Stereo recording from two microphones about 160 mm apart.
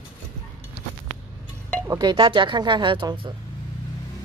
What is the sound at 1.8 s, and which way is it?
Speech, 25° right (ahead or behind).